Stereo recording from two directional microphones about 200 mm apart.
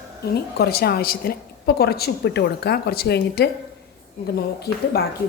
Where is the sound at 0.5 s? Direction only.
50° left (ahead or behind).